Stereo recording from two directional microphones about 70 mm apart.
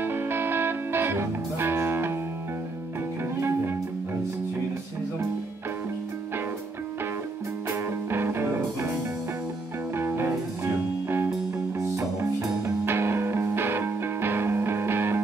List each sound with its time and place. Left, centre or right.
0.0 s music: right
3.3 s music: right
8.1 s music: right
9.9 s music: right
12.2 s music: right
12.8 s music: right